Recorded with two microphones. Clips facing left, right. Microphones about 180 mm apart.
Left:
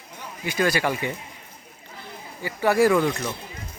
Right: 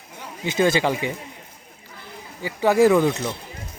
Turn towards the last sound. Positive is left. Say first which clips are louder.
# right 3 dB
turn(degrees=-20)  # may be behind; listen again after turning